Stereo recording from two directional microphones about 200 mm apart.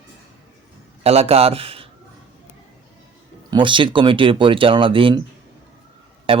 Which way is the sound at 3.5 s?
25° right (ahead or behind).